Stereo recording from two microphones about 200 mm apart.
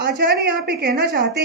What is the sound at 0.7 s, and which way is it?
Speech, 50° right (ahead or behind).